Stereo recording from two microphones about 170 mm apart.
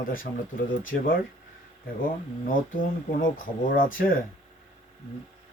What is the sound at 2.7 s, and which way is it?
Speech, 55° left (ahead or behind).